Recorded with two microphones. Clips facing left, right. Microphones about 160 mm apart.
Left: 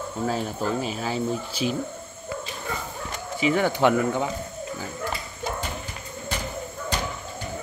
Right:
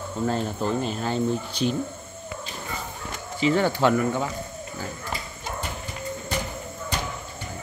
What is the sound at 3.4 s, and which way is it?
Speech, 10° left (ahead or behind).